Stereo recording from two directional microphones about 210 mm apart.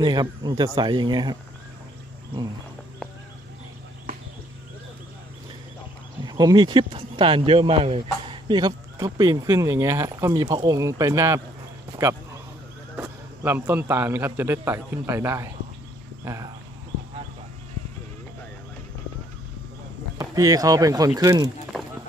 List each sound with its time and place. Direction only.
0.0 s speech: 20° right (ahead or behind)
6.2 s speech: 20° right (ahead or behind)
12.9 s a man's voice: 10° right (ahead or behind)
20.2 s a man's voice: 15° right (ahead or behind)